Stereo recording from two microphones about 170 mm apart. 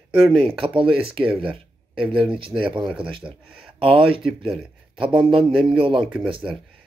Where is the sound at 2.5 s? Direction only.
10° right (ahead or behind).